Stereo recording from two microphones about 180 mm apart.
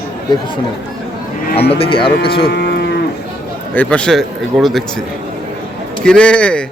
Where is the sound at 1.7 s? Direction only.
30° left (ahead or behind).